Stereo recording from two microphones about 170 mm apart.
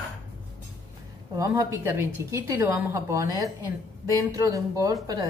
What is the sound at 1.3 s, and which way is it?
A woman's voice, 20° right (ahead or behind).